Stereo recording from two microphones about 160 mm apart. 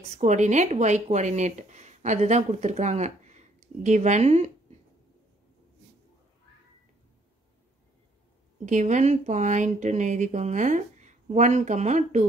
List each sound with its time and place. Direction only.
0.1 s speech: 45° right (ahead or behind)
8.6 s speech: 50° right (ahead or behind)